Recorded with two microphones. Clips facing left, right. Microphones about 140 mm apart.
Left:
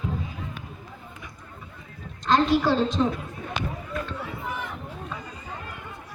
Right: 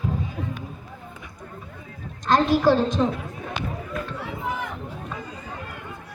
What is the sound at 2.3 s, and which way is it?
Speech, 40° right (ahead or behind).